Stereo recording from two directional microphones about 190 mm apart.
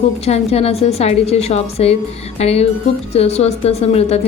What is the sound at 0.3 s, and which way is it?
A woman's voice, 35° left (ahead or behind).